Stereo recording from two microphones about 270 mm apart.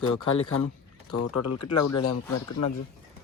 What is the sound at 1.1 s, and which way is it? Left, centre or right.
Speech, left.